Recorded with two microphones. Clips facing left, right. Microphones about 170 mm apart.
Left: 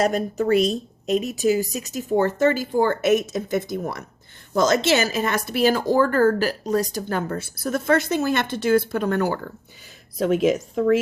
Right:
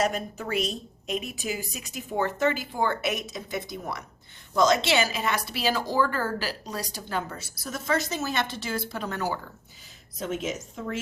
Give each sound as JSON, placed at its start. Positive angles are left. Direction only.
{"t": 0.0, "sound": "a woman's voice", "side_deg": 40}